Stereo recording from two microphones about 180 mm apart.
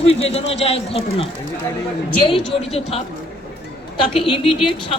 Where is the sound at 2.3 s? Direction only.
30° left (ahead or behind).